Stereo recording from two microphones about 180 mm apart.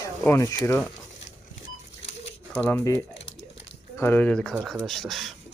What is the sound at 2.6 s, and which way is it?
Speech, 15° left (ahead or behind).